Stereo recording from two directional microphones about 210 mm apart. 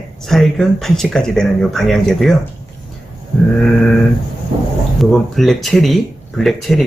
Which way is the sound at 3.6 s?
Centre (ahead or behind).